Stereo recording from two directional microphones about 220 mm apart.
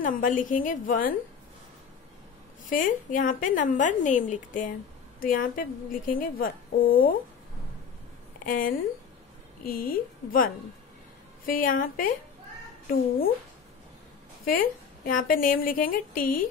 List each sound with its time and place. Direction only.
0.0 s a woman's voice: 40° left (ahead or behind)
2.6 s a woman's voice: 35° left (ahead or behind)
8.5 s a woman's voice: 40° left (ahead or behind)
14.4 s a woman's voice: 40° left (ahead or behind)